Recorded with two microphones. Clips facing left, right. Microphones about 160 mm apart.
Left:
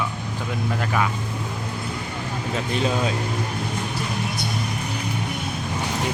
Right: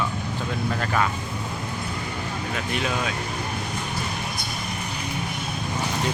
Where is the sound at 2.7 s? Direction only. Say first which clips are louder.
Left 4 dB; 30° left (ahead or behind).